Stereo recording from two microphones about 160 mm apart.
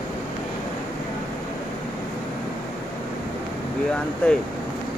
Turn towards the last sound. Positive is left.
turn(degrees=5)  # may be behind; listen again after turning